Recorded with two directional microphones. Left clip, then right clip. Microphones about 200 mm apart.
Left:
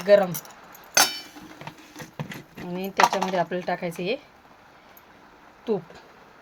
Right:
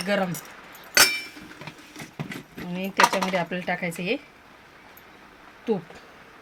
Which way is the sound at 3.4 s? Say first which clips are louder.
Left 1 dB; 60° left (ahead or behind).